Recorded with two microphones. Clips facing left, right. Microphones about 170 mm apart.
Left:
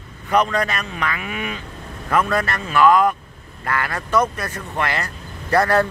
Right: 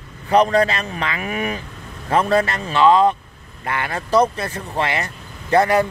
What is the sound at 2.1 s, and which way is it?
Speech, 30° right (ahead or behind).